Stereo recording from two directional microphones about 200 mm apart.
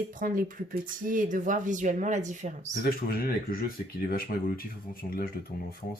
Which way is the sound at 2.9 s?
50° left (ahead or behind).